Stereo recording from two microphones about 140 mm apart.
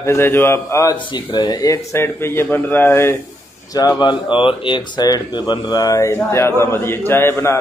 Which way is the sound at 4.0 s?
35° left (ahead or behind).